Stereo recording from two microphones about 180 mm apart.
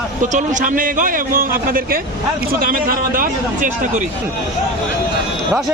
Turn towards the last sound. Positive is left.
turn(degrees=-45)  # may be behind; listen again after turning